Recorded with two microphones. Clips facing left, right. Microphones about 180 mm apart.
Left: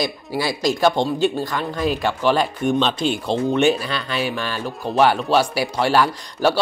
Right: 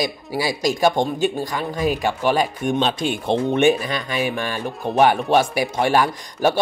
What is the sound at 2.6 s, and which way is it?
Speech, 45° right (ahead or behind).